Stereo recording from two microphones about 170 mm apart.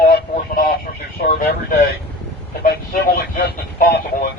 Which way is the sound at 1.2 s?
55° left (ahead or behind).